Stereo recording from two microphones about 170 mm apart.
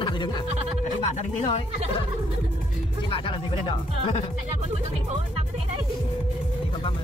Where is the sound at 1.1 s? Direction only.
40° left (ahead or behind).